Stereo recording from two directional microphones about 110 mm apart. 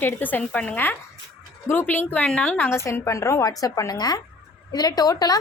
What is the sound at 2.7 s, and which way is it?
A woman's voice, 25° left (ahead or behind).